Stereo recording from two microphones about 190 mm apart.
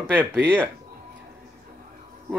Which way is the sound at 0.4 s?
10° right (ahead or behind).